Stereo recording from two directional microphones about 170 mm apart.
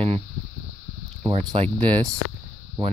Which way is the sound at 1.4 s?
30° right (ahead or behind).